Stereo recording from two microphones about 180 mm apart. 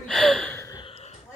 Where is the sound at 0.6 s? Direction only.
25° left (ahead or behind).